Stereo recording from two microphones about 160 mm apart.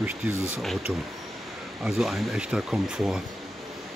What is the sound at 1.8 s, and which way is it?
Speech, centre (ahead or behind).